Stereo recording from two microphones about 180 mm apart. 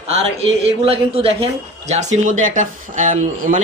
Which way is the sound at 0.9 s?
30° right (ahead or behind).